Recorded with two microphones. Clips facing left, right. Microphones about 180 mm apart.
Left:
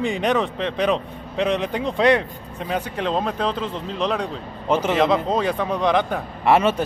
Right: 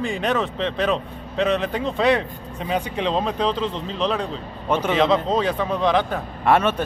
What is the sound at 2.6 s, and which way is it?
Speech, 5° right (ahead or behind).